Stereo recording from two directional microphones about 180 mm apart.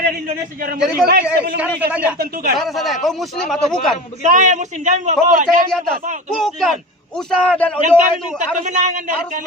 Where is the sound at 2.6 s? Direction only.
Centre (ahead or behind).